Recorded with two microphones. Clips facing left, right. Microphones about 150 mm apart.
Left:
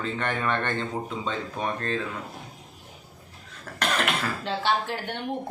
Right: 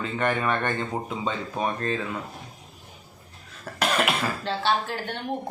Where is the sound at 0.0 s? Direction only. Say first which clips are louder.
Right 3 dB; 10° right (ahead or behind).